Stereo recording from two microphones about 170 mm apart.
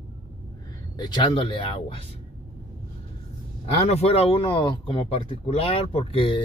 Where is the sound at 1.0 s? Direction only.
25° left (ahead or behind).